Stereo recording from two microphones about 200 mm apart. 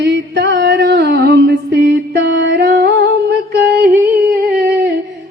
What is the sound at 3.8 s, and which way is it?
Humming, 50° right (ahead or behind).